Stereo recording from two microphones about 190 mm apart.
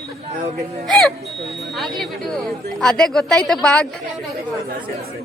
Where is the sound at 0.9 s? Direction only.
5° left (ahead or behind).